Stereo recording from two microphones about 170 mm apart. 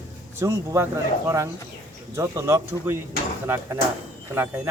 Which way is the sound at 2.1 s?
15° right (ahead or behind).